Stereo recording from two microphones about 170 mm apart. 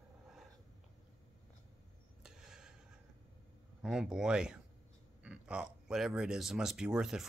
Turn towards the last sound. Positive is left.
turn(degrees=-5)  # may be behind; listen again after turning